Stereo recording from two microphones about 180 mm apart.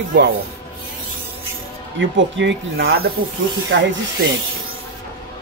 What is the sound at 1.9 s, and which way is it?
Speech, 90° right.